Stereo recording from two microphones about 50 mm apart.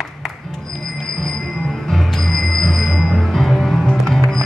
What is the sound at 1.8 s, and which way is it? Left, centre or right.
Bicycle bell, centre.